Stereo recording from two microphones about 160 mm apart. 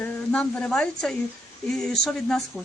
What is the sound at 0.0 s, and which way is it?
A woman's voice, 10° left (ahead or behind).